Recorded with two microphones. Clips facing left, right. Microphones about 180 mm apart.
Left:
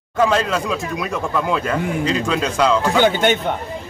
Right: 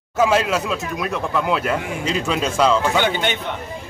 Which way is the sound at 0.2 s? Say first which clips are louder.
Even; 5° right (ahead or behind).